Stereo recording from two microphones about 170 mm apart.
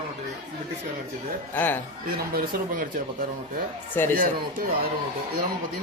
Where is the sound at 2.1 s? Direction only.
65° right (ahead or behind).